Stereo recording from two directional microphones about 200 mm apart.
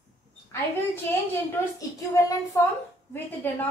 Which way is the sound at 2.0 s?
15° left (ahead or behind).